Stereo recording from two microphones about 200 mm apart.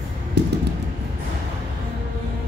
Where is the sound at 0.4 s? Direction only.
55° right (ahead or behind).